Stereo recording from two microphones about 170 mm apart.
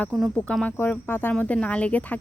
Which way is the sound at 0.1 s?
5° left (ahead or behind).